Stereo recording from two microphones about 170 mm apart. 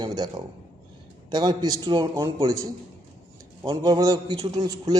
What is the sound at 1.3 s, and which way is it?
Speech, 25° right (ahead or behind).